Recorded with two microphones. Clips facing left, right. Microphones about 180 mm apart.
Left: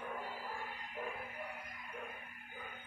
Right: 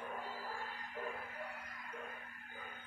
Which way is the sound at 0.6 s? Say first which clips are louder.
Even; 20° left (ahead or behind).